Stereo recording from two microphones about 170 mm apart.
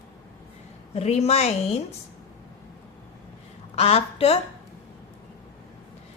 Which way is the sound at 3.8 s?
35° left (ahead or behind).